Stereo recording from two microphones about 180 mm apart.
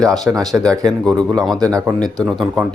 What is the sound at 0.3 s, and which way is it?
Speech, 20° right (ahead or behind).